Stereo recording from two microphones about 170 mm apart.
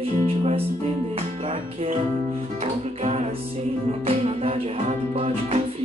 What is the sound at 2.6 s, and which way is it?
Music, 40° right (ahead or behind).